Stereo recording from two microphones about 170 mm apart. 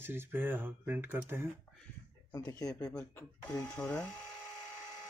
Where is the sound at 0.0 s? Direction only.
15° right (ahead or behind).